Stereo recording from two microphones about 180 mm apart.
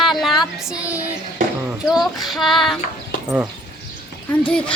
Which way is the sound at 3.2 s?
10° right (ahead or behind).